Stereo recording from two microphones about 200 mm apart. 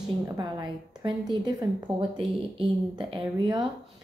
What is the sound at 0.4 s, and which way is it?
Speech, 20° right (ahead or behind).